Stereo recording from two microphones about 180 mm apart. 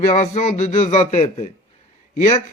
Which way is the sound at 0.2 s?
40° left (ahead or behind).